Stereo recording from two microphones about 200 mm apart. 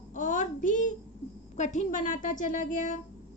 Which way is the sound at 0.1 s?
40° left (ahead or behind).